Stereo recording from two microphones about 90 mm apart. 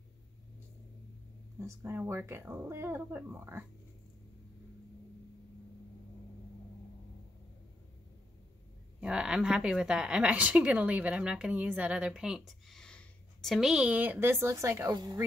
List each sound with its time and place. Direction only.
1.6 s speech: 35° right (ahead or behind)
9.0 s a woman's voice: 10° right (ahead or behind); by 15.0 s 35° right (ahead or behind)